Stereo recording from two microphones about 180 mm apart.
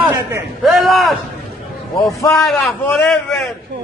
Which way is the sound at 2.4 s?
5° left (ahead or behind).